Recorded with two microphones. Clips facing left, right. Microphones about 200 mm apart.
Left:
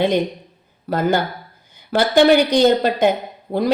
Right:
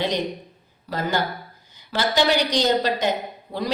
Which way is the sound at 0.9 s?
50° left (ahead or behind).